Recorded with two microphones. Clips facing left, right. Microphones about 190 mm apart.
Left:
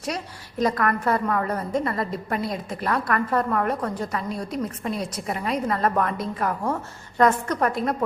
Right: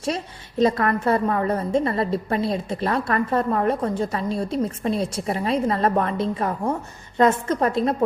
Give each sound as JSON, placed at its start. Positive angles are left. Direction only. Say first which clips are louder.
{"t": 0.6, "sound": "a woman's voice", "louder": "right 3 dB", "side_deg": -25}